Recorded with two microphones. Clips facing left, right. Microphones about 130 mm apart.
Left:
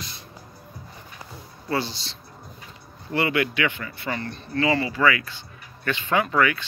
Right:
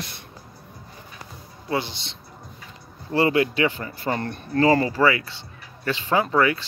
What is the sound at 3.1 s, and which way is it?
Speech, 35° right (ahead or behind).